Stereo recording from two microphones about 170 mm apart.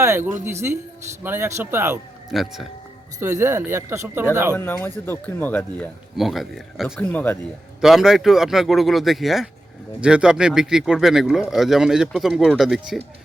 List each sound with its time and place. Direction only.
0.0 s speech: 15° right (ahead or behind)
2.3 s speech: centre (ahead or behind)
3.2 s speech: 15° right (ahead or behind)
4.5 s speech: 10° left (ahead or behind)
7.1 s speech: 10° left (ahead or behind)
7.8 s speech: 5° right (ahead or behind)